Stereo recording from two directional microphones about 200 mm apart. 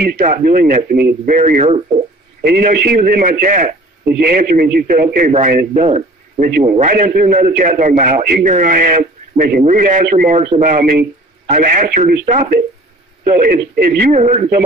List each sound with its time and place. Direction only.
0.2 s speech: 40° right (ahead or behind)
2.4 s a man's voice: 55° right (ahead or behind)